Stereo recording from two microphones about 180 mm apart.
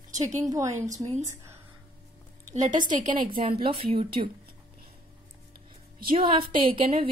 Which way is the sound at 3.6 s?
30° right (ahead or behind).